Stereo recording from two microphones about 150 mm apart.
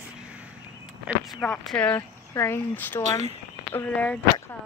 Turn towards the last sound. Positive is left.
turn(degrees=10)  # may be behind; listen again after turning